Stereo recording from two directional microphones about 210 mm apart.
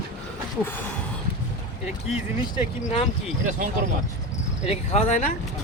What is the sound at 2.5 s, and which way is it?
Speech, 25° left (ahead or behind).